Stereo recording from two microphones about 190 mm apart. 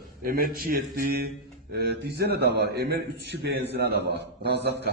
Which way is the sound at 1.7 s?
60° right (ahead or behind).